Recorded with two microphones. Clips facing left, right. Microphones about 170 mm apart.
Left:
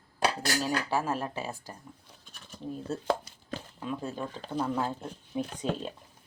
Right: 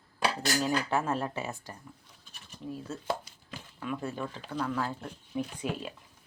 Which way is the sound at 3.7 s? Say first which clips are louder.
Right 1 dB; 20° left (ahead or behind).